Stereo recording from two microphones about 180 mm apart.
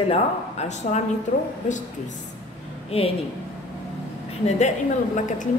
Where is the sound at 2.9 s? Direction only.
35° left (ahead or behind).